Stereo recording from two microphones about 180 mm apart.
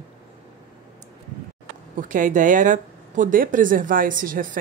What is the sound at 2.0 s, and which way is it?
Speech, 45° right (ahead or behind).